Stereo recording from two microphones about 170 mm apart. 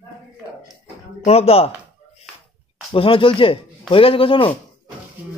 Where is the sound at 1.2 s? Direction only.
35° left (ahead or behind).